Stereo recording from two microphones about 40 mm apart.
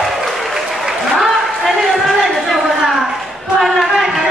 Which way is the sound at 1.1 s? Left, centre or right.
Centre.